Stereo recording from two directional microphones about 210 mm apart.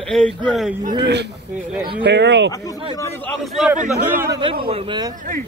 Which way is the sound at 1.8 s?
55° right (ahead or behind).